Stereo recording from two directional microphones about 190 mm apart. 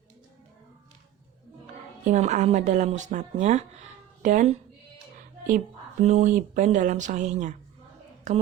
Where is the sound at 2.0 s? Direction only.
40° right (ahead or behind).